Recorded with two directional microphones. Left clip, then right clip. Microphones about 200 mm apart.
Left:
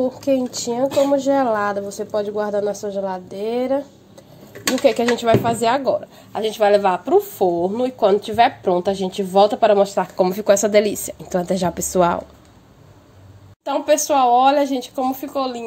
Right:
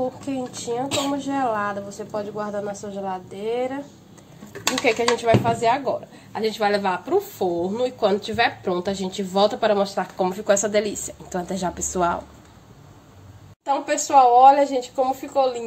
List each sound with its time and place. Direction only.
0.2 s a woman's voice: 45° left (ahead or behind)
4.8 s speech: 40° left (ahead or behind)
14.1 s a woman's voice: 50° left (ahead or behind)